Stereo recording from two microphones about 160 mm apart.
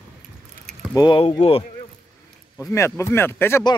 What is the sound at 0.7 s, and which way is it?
Keys jangling, 5° left (ahead or behind).